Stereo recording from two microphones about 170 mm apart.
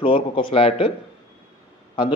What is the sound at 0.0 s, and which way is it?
Speech, 30° left (ahead or behind).